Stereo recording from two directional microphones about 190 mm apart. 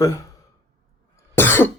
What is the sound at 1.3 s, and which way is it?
Cough, 10° left (ahead or behind).